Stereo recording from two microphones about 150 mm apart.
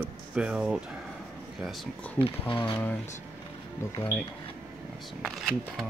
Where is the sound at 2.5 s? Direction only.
35° left (ahead or behind).